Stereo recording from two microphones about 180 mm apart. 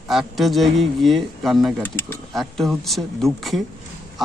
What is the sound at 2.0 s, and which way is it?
Speech, 15° left (ahead or behind).